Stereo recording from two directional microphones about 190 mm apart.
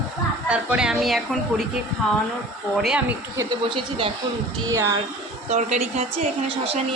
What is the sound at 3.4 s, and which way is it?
Speech, 25° right (ahead or behind).